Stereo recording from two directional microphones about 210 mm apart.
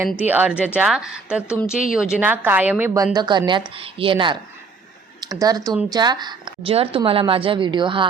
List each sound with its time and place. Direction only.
0.3 s a woman's voice: 10° right (ahead or behind)